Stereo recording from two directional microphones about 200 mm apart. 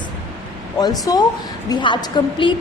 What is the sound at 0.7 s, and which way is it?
A woman's voice, 20° left (ahead or behind).